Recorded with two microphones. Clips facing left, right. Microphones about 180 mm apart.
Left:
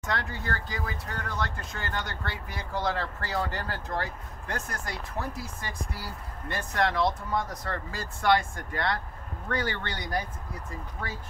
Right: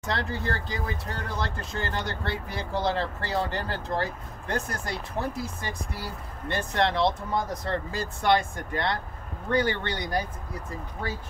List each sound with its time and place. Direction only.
0.0 s speech: 30° right (ahead or behind)